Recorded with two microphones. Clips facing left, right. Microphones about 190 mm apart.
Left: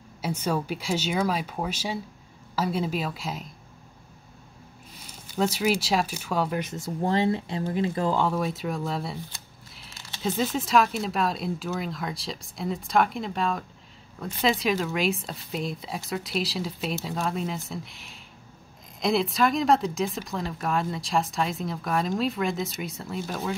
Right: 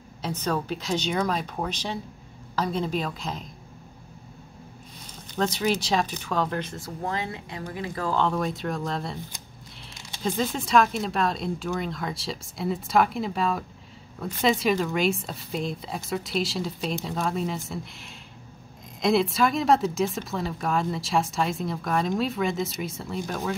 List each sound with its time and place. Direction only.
0.2 s speech: 10° left (ahead or behind)
5.2 s speech: 10° left (ahead or behind)
7.0 s speech: 30° left (ahead or behind)
8.2 s speech: 5° left (ahead or behind)